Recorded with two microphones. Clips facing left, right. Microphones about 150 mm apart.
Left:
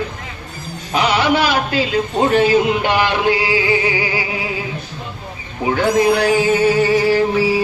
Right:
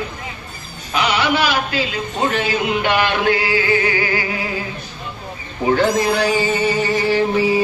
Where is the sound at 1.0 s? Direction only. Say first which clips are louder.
Left 2 dB; 35° left (ahead or behind); by 4.5 s 15° left (ahead or behind).